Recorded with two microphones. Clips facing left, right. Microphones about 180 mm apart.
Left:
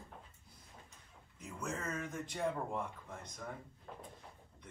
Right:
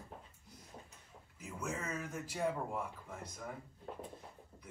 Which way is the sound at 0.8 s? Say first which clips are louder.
Right 2 dB; centre (ahead or behind).